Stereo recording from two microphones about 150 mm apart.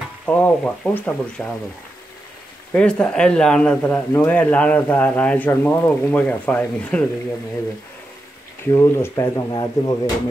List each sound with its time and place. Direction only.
0.2 s speech: 10° left (ahead or behind)
2.7 s speech: 10° left (ahead or behind)
8.7 s speech: 20° left (ahead or behind)